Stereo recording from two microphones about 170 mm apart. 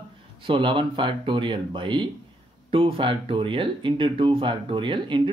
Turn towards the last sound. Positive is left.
turn(degrees=-30)  # may be behind; listen again after turning